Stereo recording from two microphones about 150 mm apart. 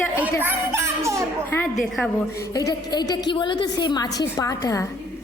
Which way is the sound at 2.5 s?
25° left (ahead or behind).